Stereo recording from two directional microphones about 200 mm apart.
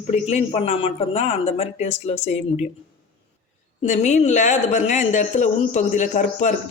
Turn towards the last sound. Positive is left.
turn(degrees=35)  # may be behind; listen again after turning